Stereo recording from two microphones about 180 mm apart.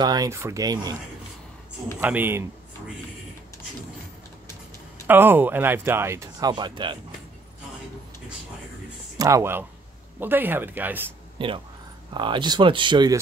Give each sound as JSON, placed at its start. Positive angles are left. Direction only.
{"t": 0.0, "sound": "speech", "side_deg": -20}
{"t": 2.0, "sound": "speech", "side_deg": -10}
{"t": 5.0, "sound": "speech", "side_deg": -10}
{"t": 6.5, "sound": "speech", "side_deg": -25}
{"t": 9.2, "sound": "speech", "side_deg": -15}
{"t": 11.3, "sound": "speech", "side_deg": -25}